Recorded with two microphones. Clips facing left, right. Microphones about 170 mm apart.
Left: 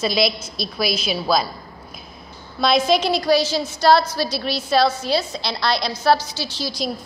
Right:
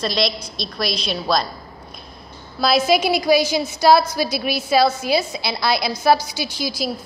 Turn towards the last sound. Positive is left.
turn(degrees=-10)  # may be behind; listen again after turning